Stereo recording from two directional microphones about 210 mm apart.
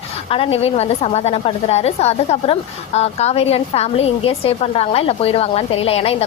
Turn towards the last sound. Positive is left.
turn(degrees=30)  # may be behind; listen again after turning